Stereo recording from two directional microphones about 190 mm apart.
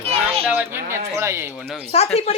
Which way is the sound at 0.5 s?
10° right (ahead or behind).